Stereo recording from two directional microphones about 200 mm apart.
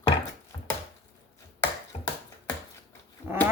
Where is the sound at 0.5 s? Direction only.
20° left (ahead or behind).